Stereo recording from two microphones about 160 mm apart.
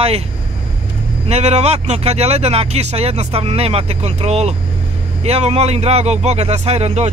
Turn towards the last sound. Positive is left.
turn(degrees=-40)  # may be behind; listen again after turning